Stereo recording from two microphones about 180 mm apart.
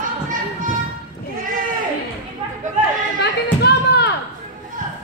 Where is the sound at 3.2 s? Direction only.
65° left (ahead or behind).